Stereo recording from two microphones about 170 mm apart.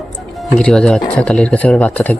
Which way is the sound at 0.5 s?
5° left (ahead or behind).